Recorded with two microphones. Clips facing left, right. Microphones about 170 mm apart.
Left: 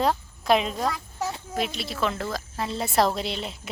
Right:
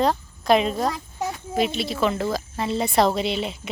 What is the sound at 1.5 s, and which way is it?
A woman's voice, centre (ahead or behind).